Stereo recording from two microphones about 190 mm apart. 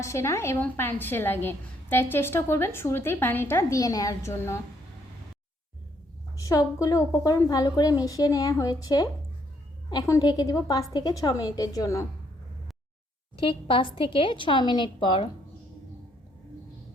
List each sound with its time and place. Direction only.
0.0 s a woman's voice: 15° left (ahead or behind)
6.3 s a sound: 20° left (ahead or behind)
7.3 s a woman's voice: 20° left (ahead or behind)
13.3 s a woman's voice: 25° left (ahead or behind)